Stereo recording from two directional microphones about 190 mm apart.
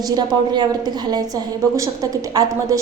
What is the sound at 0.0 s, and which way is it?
A woman's voice, 20° right (ahead or behind).